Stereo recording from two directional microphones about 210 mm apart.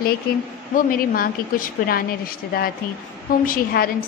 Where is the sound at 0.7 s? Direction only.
45° left (ahead or behind).